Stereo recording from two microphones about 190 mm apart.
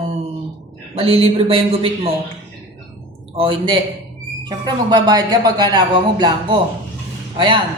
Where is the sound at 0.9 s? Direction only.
30° right (ahead or behind).